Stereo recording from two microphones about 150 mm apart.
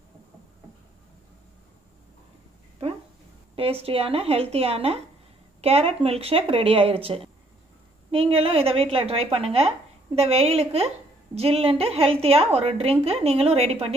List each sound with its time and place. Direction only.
3.5 s a woman's voice: 40° right (ahead or behind)